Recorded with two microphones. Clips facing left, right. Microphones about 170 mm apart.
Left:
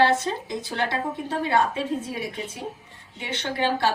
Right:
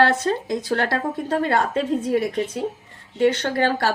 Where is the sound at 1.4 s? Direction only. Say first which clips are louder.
Even; 60° right (ahead or behind).